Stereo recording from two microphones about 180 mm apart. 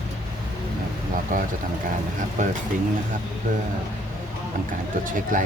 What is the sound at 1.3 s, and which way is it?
Speech, 50° right (ahead or behind).